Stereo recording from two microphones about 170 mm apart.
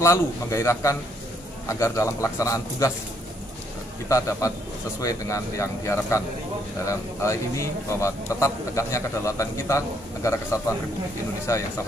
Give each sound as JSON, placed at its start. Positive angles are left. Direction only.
{"t": 0.0, "sound": "speech", "side_deg": 15}
{"t": 4.1, "sound": "a man's voice", "side_deg": 20}